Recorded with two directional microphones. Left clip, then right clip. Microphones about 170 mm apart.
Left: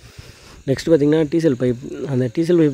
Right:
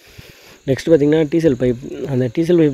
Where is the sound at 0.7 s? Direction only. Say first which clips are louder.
Right 2 dB; 5° left (ahead or behind).